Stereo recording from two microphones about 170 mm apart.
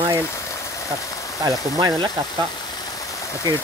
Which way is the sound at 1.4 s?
25° right (ahead or behind).